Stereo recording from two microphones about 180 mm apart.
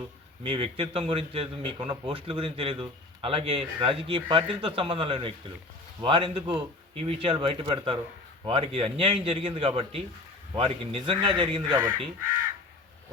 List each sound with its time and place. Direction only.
0.4 s a man's voice: 30° right (ahead or behind)